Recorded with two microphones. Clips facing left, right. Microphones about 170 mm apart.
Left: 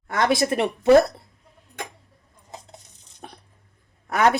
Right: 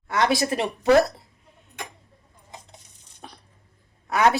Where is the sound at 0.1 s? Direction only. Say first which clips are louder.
Left 1 dB; 50° left (ahead or behind).